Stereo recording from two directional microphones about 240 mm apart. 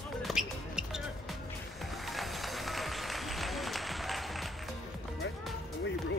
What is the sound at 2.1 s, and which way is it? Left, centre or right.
Music, centre.